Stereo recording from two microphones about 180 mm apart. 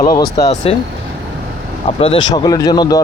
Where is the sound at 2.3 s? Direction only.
20° left (ahead or behind).